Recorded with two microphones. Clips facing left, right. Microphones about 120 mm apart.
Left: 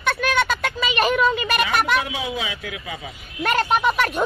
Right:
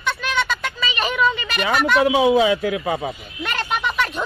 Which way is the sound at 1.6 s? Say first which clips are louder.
Right 9 dB; 35° right (ahead or behind).